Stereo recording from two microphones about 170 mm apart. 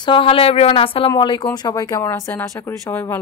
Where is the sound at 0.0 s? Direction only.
30° left (ahead or behind).